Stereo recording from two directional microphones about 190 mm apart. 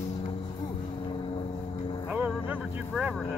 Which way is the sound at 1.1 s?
25° left (ahead or behind).